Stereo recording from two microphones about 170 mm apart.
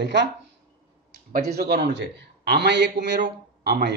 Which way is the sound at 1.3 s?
70° right (ahead or behind).